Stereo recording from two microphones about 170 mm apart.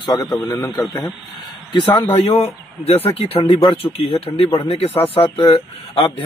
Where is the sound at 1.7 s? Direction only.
30° left (ahead or behind).